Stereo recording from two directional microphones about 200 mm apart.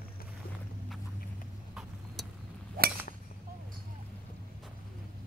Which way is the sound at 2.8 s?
45° right (ahead or behind).